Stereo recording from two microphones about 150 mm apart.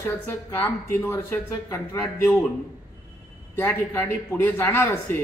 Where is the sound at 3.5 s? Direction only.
15° left (ahead or behind).